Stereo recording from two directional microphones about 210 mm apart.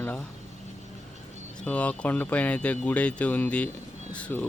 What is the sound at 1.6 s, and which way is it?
Speech, 5° left (ahead or behind).